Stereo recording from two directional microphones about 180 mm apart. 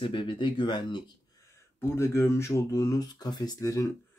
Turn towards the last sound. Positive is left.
turn(degrees=20)  # may be behind; listen again after turning